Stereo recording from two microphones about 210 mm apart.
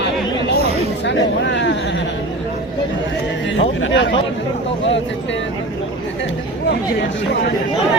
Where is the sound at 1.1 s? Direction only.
55° left (ahead or behind).